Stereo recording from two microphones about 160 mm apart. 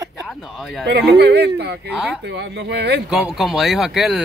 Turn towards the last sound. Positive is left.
turn(degrees=0)  # may be behind; listen again after turning